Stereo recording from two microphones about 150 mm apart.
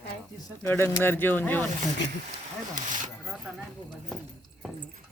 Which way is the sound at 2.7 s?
60° right (ahead or behind).